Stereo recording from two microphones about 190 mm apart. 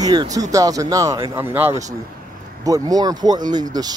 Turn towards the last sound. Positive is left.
turn(degrees=-20)  # may be behind; listen again after turning